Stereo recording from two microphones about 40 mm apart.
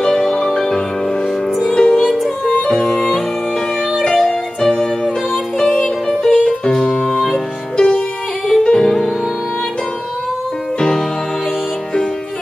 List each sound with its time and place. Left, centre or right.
0.4 s music: centre
2.4 s music: left
2.7 s music: centre